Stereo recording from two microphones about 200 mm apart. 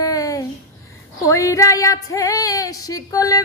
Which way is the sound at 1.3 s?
15° left (ahead or behind).